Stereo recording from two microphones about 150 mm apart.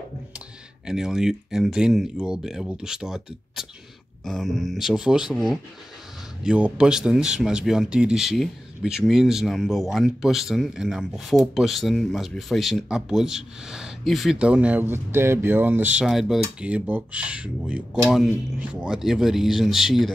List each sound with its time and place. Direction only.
0.8 s speech: 5° right (ahead or behind)